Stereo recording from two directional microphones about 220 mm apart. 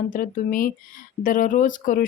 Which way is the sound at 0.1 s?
40° left (ahead or behind).